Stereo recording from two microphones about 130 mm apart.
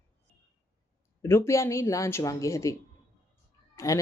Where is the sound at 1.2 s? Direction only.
20° left (ahead or behind).